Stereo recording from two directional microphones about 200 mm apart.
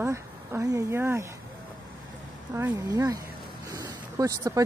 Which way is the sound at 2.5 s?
15° right (ahead or behind).